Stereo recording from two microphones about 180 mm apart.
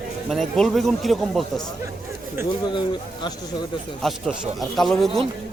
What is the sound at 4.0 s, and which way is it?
Speech, centre (ahead or behind).